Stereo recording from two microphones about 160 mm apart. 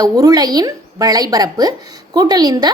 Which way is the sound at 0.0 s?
25° right (ahead or behind).